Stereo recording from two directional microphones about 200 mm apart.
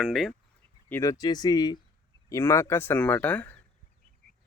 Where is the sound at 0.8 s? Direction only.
10° left (ahead or behind).